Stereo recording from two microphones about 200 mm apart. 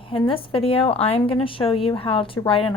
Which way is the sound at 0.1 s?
25° left (ahead or behind).